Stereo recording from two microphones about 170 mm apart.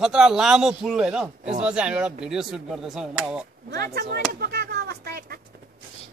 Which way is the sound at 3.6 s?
60° right (ahead or behind).